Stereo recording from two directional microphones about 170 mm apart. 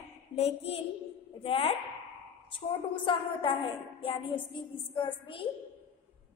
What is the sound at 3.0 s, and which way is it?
A woman's voice, 30° left (ahead or behind).